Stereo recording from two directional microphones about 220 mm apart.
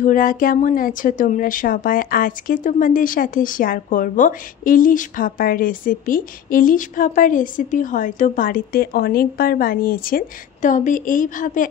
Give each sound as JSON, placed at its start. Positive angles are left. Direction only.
{"t": 0.0, "sound": "a woman's voice", "side_deg": 40}